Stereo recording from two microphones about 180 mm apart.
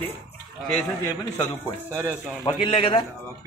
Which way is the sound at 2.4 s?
30° left (ahead or behind).